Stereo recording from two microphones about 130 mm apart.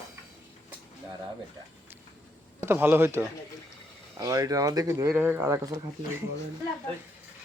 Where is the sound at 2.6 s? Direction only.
15° right (ahead or behind).